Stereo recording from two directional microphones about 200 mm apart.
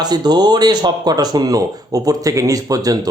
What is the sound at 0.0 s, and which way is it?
Speech, 20° right (ahead or behind).